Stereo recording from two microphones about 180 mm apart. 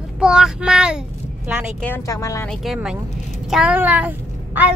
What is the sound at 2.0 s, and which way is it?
Speech, 15° left (ahead or behind).